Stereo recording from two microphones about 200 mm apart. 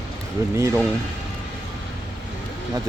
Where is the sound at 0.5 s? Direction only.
15° right (ahead or behind).